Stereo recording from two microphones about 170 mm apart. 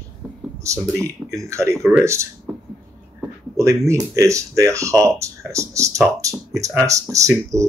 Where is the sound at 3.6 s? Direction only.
15° right (ahead or behind).